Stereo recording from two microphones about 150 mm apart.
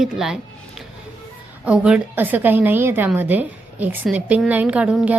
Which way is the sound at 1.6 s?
5° right (ahead or behind).